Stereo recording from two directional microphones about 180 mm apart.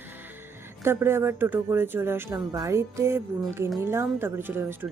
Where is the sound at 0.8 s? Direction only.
15° right (ahead or behind).